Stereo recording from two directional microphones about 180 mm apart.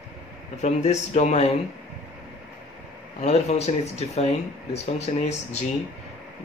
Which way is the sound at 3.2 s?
35° left (ahead or behind).